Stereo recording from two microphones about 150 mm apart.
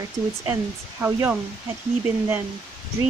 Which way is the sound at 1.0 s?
15° right (ahead or behind).